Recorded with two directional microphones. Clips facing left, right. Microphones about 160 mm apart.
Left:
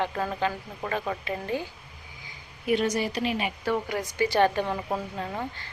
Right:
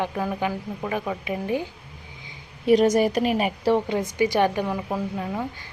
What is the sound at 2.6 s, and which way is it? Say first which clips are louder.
A woman's voice: right 8 dB; 40° right (ahead or behind).